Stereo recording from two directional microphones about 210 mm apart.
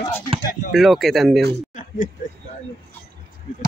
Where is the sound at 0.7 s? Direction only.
Centre (ahead or behind).